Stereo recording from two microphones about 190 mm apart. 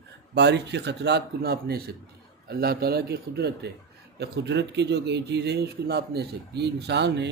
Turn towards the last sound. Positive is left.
turn(degrees=-65)  # may be behind; listen again after turning